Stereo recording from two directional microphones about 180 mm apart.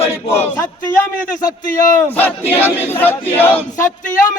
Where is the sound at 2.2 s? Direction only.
10° left (ahead or behind).